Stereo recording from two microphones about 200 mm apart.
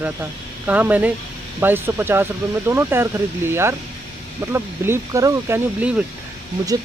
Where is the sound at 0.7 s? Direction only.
10° right (ahead or behind).